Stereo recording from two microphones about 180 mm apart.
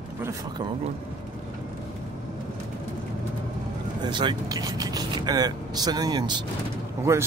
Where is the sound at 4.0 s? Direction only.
25° right (ahead or behind).